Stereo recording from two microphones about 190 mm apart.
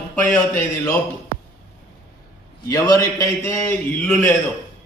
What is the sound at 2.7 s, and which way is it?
A man's voice, 20° left (ahead or behind).